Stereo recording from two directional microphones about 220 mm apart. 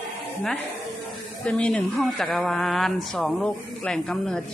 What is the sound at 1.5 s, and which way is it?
Speech, 5° left (ahead or behind).